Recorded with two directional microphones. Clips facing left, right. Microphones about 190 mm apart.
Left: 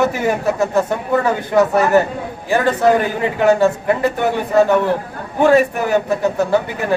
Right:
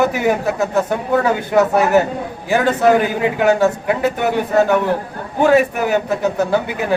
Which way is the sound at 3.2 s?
5° right (ahead or behind).